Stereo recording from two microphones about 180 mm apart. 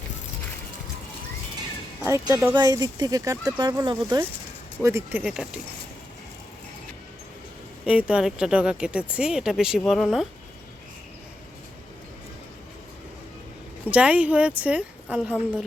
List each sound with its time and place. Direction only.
2.0 s speech: 15° right (ahead or behind)
7.9 s speech: 5° right (ahead or behind)
13.8 s speech: 5° right (ahead or behind)